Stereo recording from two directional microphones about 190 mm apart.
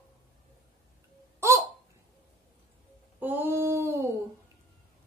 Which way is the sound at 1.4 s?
15° right (ahead or behind).